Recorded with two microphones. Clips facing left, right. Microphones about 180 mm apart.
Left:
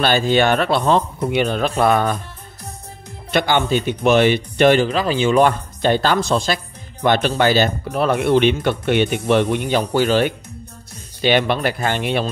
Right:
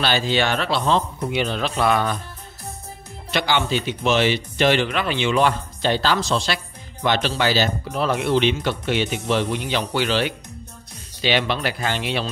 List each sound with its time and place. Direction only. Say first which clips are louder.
0.0 s speech: left 5 dB; 50° left (ahead or behind)
3.3 s speech: left 4 dB; 50° left (ahead or behind)
4.8 s speech: left 5 dB; 35° left (ahead or behind); by 12.3 s 50° left (ahead or behind)